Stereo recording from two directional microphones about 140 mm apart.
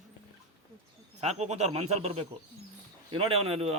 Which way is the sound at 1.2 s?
55° right (ahead or behind).